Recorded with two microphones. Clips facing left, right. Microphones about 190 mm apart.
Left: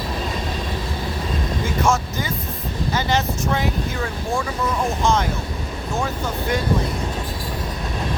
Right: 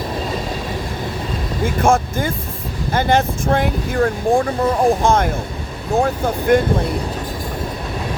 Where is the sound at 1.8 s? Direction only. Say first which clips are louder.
Right 6 dB; 55° right (ahead or behind).